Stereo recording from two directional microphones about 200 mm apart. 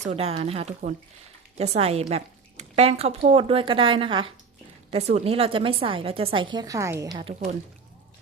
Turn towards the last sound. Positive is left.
turn(degrees=-25)  # may be behind; listen again after turning